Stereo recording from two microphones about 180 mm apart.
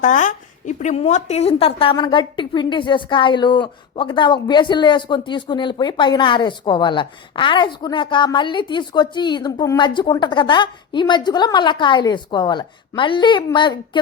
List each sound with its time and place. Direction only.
0.0 s a woman's voice: 45° left (ahead or behind); by 14.0 s 25° left (ahead or behind)